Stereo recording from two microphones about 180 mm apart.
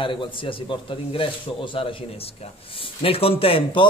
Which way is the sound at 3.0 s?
30° left (ahead or behind).